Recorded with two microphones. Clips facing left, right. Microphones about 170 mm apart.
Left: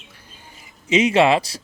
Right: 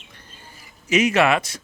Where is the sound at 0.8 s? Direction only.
25° left (ahead or behind).